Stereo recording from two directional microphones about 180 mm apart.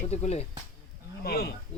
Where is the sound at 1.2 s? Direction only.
60° left (ahead or behind).